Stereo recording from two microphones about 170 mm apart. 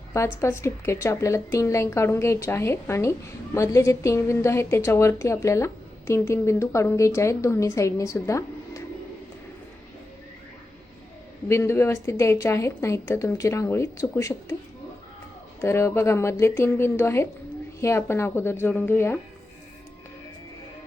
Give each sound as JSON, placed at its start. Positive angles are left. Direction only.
{"t": 0.1, "sound": "speech", "side_deg": 15}
{"t": 11.4, "sound": "speech", "side_deg": 15}
{"t": 15.6, "sound": "speech", "side_deg": 15}